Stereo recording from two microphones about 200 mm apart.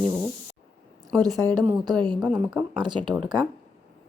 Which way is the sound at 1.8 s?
20° right (ahead or behind).